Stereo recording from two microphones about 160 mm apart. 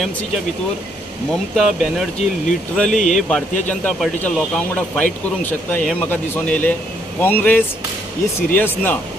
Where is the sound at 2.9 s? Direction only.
50° left (ahead or behind).